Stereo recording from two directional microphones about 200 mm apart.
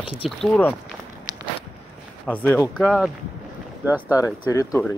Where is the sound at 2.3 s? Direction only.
10° left (ahead or behind).